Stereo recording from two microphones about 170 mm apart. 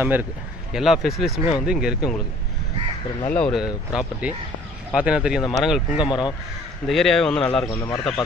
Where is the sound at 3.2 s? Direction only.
5° left (ahead or behind).